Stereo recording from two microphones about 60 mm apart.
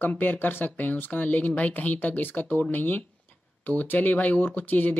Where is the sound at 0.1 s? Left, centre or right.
Left.